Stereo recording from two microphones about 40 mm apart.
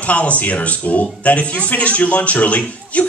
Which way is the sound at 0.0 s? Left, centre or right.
Left.